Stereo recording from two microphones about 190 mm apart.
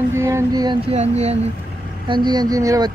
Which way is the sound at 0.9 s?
35° right (ahead or behind).